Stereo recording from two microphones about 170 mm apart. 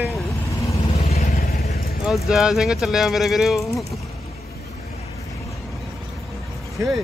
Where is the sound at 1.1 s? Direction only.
40° left (ahead or behind).